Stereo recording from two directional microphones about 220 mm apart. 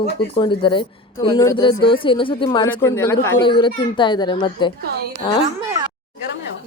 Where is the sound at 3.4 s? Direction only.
20° left (ahead or behind).